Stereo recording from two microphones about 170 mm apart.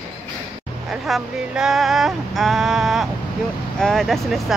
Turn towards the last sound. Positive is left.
turn(degrees=0)  # may be behind; listen again after turning